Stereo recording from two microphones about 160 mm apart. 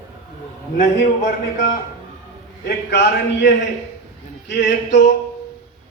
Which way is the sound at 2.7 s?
90° left.